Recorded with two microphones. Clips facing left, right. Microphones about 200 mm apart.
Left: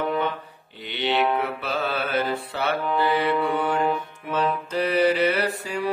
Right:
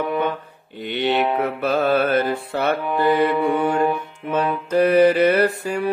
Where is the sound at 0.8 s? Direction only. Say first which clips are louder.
Right 4 dB; 50° right (ahead or behind).